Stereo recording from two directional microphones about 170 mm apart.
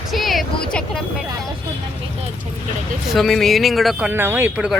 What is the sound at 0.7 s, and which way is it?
Speech, 5° left (ahead or behind).